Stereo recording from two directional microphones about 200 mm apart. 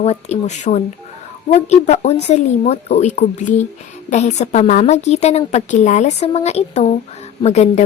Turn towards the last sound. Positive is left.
turn(degrees=35)  # may be behind; listen again after turning